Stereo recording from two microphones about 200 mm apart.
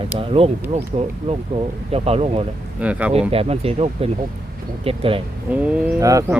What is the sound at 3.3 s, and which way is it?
Speech, 30° right (ahead or behind).